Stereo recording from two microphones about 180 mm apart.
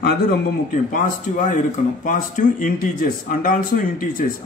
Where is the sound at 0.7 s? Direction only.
45° left (ahead or behind).